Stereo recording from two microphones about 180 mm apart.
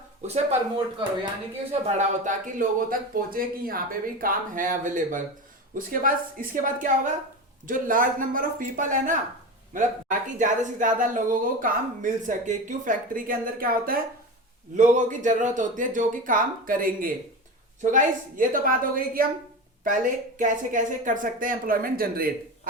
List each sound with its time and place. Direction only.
1.9 s speech: 40° right (ahead or behind)